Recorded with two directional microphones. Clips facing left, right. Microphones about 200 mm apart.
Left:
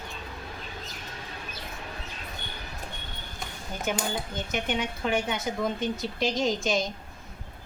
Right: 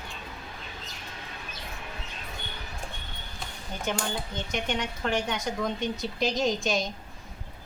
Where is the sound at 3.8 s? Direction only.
5° left (ahead or behind).